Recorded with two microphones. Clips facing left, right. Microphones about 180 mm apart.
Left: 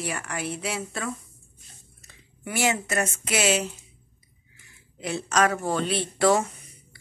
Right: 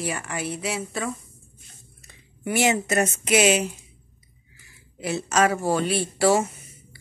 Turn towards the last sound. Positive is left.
turn(degrees=-10)  # may be behind; listen again after turning